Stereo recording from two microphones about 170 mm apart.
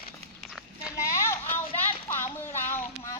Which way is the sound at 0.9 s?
15° left (ahead or behind).